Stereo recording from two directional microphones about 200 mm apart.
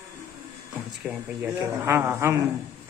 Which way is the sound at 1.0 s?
5° right (ahead or behind).